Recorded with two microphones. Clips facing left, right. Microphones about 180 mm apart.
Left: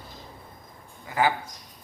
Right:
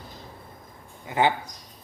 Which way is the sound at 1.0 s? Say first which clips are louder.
Right 2 dB; 25° right (ahead or behind).